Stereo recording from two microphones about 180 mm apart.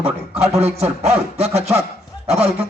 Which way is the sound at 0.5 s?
35° right (ahead or behind).